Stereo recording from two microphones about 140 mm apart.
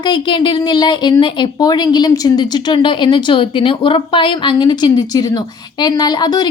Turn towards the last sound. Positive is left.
turn(degrees=30)  # may be behind; listen again after turning